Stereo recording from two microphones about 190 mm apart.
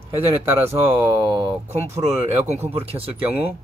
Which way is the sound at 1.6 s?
35° right (ahead or behind).